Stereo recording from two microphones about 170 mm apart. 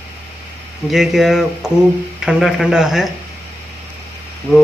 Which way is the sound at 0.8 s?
Centre (ahead or behind).